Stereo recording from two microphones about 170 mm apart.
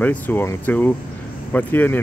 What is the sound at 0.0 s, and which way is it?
Speech, 10° left (ahead or behind).